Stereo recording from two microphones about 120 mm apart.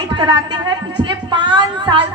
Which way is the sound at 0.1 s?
40° right (ahead or behind).